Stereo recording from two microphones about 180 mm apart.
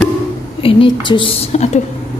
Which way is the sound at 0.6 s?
30° left (ahead or behind).